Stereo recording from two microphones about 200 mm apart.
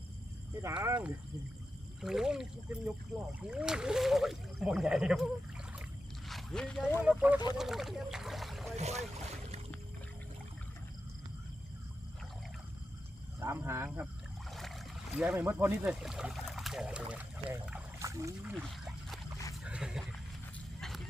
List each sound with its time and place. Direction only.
0.6 s speech: 15° right (ahead or behind)
6.2 s a sound: centre (ahead or behind)
7.0 s speech: 5° right (ahead or behind)
8.7 s speech: 35° right (ahead or behind)
13.4 s speech: 10° right (ahead or behind)
15.2 s speech: 10° right (ahead or behind)
18.7 s a sound: centre (ahead or behind)
19.6 s wild animals: 5° right (ahead or behind)